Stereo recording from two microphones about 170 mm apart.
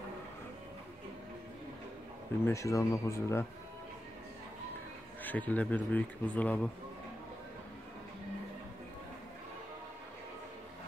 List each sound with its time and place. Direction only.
2.4 s speech: 20° left (ahead or behind)
5.2 s speech: 10° left (ahead or behind)